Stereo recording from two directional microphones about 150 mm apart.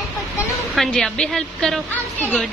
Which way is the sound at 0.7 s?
5° left (ahead or behind).